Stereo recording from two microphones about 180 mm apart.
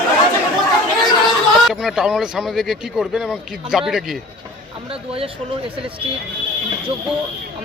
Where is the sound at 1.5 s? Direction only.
Centre (ahead or behind).